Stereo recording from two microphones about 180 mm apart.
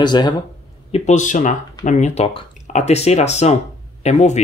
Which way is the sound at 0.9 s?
40° left (ahead or behind).